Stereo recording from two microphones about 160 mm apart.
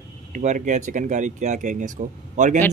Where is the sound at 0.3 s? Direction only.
50° right (ahead or behind).